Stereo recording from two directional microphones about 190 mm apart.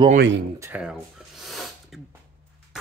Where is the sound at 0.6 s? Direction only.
10° right (ahead or behind).